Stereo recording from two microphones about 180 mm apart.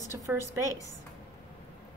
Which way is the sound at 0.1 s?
15° right (ahead or behind).